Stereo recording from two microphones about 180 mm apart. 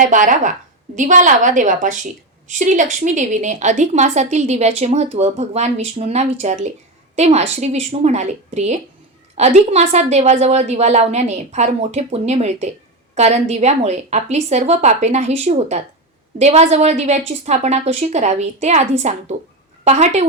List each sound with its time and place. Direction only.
0.0 s a woman's voice: 45° right (ahead or behind)